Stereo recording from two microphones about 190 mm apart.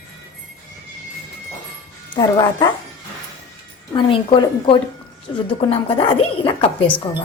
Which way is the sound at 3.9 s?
25° left (ahead or behind).